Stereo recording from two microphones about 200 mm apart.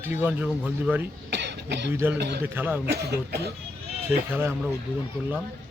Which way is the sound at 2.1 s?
55° right (ahead or behind).